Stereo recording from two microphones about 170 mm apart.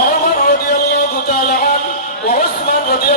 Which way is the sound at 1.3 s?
55° left (ahead or behind).